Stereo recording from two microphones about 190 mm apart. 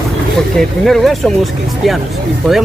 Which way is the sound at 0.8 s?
Centre (ahead or behind).